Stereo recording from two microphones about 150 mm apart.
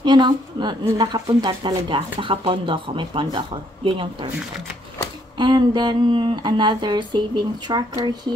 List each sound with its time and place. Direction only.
0.0 s a woman's voice: 30° right (ahead or behind)
5.4 s speech: 30° right (ahead or behind)